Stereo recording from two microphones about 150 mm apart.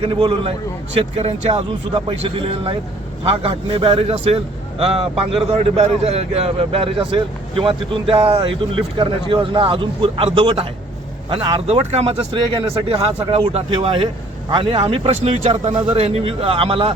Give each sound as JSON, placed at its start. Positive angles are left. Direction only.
{"t": 0.0, "sound": "speech", "side_deg": -35}
{"t": 11.9, "sound": "speech", "side_deg": -45}
{"t": 12.9, "sound": "speech", "side_deg": -35}